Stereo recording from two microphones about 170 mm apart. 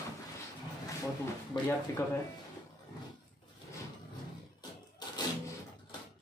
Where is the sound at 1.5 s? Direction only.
30° left (ahead or behind).